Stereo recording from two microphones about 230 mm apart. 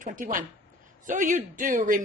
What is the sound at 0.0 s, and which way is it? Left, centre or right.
Speech, right.